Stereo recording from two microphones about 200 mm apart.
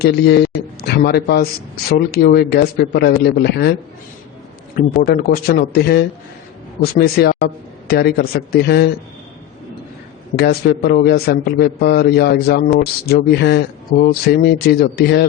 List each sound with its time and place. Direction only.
0.0 s a man's voice: 55° left (ahead or behind)
5.0 s a man's voice: 50° left (ahead or behind)
10.3 s a man's voice: 55° left (ahead or behind)